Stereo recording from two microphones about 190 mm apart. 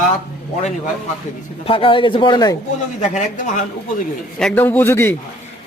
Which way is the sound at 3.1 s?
40° left (ahead or behind).